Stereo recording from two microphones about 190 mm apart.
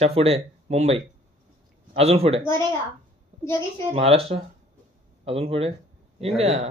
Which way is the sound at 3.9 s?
30° right (ahead or behind).